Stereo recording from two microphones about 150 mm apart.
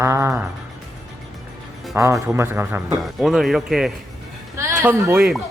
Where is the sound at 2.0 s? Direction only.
20° right (ahead or behind).